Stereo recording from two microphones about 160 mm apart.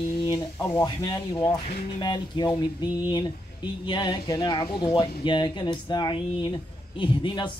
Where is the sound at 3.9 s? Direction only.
25° left (ahead or behind).